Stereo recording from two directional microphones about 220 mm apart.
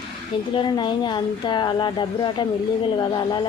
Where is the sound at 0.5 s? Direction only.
20° left (ahead or behind).